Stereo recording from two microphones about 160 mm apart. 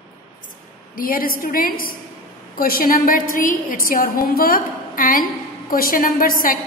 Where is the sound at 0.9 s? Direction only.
65° left (ahead or behind).